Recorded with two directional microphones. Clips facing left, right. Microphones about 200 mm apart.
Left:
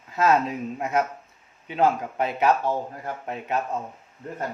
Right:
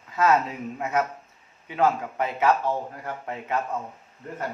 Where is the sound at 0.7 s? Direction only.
15° left (ahead or behind).